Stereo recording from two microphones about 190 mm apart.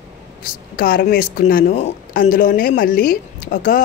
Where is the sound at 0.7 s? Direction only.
55° left (ahead or behind).